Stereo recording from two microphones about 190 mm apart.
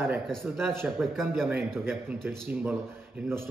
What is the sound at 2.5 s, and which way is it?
Speech, 10° right (ahead or behind).